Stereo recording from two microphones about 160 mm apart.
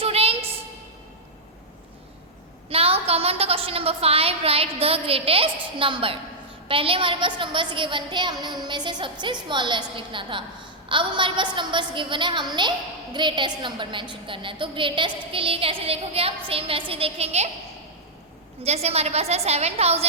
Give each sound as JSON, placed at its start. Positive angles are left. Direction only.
{"t": 0.0, "sound": "a sound", "side_deg": -35}
{"t": 2.6, "sound": "a woman's voice", "side_deg": -35}
{"t": 18.6, "sound": "a woman's voice", "side_deg": -40}